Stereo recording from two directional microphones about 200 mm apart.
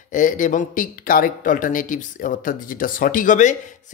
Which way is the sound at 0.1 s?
40° left (ahead or behind).